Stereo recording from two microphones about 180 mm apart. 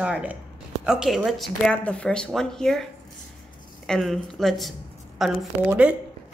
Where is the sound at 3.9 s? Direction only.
Centre (ahead or behind).